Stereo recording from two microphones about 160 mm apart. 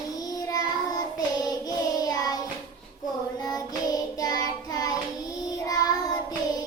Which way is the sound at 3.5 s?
25° left (ahead or behind).